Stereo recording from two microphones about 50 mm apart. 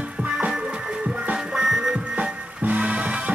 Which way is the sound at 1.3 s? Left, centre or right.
Centre.